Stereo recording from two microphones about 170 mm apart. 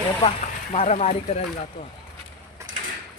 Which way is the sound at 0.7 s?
40° left (ahead or behind).